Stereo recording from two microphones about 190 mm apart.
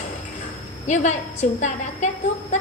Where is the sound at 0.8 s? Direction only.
40° left (ahead or behind).